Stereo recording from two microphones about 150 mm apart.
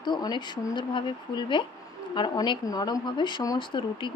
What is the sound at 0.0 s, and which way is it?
Speech, 30° left (ahead or behind).